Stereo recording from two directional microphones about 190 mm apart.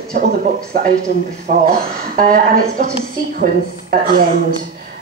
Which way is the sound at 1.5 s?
45° right (ahead or behind).